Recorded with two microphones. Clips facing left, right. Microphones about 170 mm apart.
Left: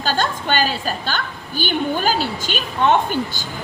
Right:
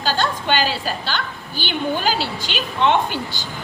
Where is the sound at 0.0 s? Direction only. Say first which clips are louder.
Even; 45° left (ahead or behind).